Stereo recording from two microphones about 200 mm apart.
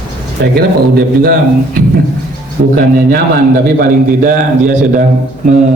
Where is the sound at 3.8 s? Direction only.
40° right (ahead or behind).